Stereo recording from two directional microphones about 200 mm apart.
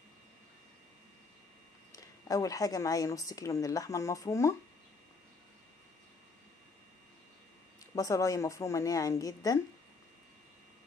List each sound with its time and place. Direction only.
2.0 s a woman's voice: 15° left (ahead or behind)
7.8 s a woman's voice: 15° left (ahead or behind)